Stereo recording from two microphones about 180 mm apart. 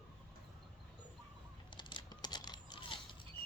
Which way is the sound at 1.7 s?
25° left (ahead or behind).